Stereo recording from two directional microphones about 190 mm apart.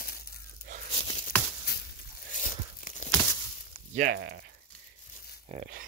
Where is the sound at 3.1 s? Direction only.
15° left (ahead or behind).